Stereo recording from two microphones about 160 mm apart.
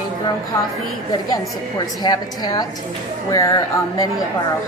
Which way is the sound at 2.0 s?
25° left (ahead or behind).